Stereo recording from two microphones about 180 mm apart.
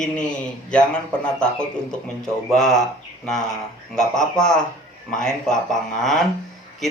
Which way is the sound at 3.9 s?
5° left (ahead or behind).